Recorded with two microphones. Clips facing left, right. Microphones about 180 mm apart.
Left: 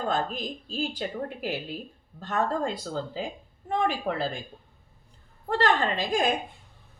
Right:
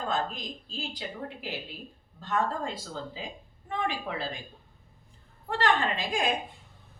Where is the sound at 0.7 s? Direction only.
50° left (ahead or behind).